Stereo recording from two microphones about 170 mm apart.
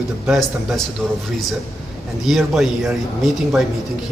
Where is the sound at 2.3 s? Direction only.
Centre (ahead or behind).